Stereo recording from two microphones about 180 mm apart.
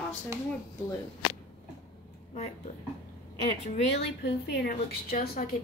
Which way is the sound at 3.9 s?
75° left (ahead or behind).